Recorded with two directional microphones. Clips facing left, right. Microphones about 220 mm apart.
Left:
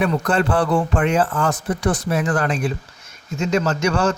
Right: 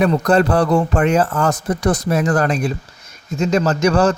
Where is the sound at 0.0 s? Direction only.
40° right (ahead or behind).